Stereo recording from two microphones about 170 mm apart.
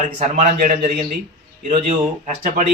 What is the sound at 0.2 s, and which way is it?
Speech, 45° right (ahead or behind).